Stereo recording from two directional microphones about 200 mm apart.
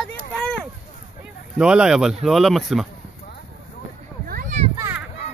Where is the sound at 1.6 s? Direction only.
5° right (ahead or behind).